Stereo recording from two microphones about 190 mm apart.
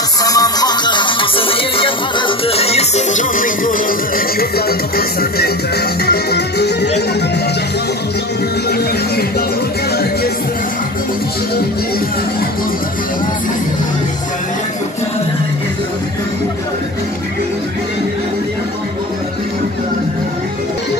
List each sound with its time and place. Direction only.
0.2 s music: 20° left (ahead or behind); by 6.9 s 60° left (ahead or behind)
8.6 s music: 55° left (ahead or behind)